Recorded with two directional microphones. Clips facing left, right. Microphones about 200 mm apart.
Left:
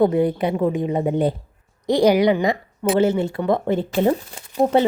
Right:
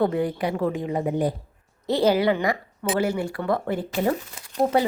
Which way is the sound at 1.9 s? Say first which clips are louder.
Left 4 dB; 15° left (ahead or behind).